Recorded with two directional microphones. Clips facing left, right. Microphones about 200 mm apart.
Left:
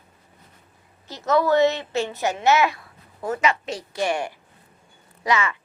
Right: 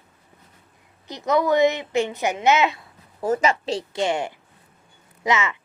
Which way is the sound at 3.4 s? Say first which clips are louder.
Right 2 dB; 35° right (ahead or behind).